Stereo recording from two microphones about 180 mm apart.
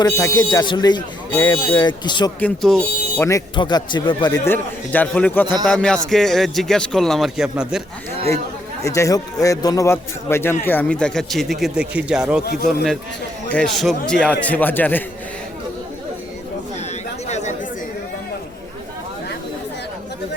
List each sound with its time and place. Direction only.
0.0 s speech: 20° left (ahead or behind)
2.4 s speech: 5° left (ahead or behind)
3.2 s speech: 20° left (ahead or behind)
4.4 s a man's voice: 10° left (ahead or behind)
8.8 s a man's voice: 15° left (ahead or behind)
17.2 s chatter: 40° left (ahead or behind)